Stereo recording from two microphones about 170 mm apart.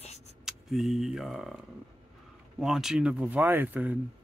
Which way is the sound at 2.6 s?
Centre (ahead or behind).